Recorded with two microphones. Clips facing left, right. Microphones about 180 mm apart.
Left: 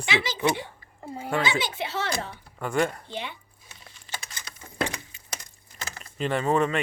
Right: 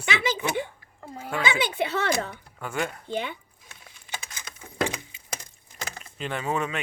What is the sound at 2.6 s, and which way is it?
Speech, centre (ahead or behind).